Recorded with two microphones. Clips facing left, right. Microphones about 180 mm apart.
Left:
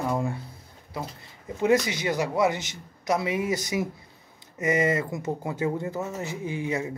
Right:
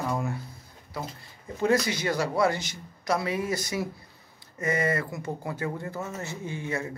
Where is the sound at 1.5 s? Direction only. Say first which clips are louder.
Left 2 dB; 20° left (ahead or behind).